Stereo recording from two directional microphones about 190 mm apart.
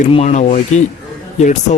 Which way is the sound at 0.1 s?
35° left (ahead or behind).